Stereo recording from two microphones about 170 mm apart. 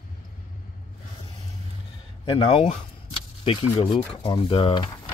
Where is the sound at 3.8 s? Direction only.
30° left (ahead or behind).